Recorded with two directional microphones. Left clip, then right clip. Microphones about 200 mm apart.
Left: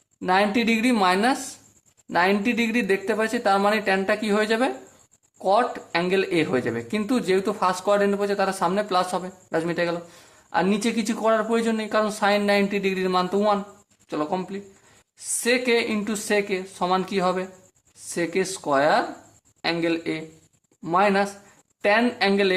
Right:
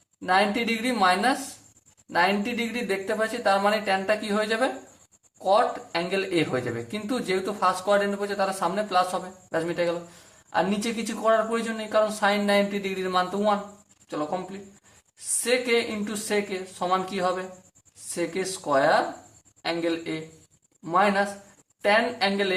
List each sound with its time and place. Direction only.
0.2 s speech: 40° left (ahead or behind)